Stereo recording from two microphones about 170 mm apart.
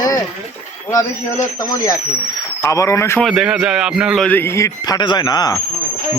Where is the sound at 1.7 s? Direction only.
20° left (ahead or behind).